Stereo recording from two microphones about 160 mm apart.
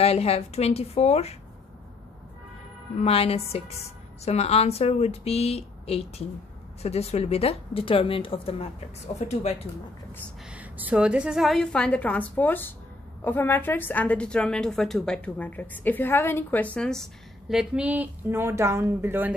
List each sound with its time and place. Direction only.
0.0 s a woman's voice: 40° left (ahead or behind)
3.0 s a woman's voice: 40° left (ahead or behind)
10.4 s a woman's voice: 10° right (ahead or behind)